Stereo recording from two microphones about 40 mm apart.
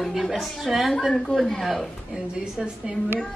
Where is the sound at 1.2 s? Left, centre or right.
Centre.